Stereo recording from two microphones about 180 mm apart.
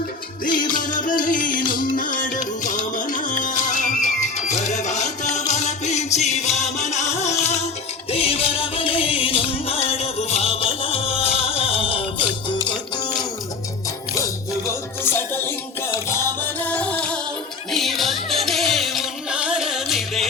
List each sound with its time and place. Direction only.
0.8 s music: 45° left (ahead or behind); by 13.2 s 25° left (ahead or behind)
14.7 s music: 15° left (ahead or behind)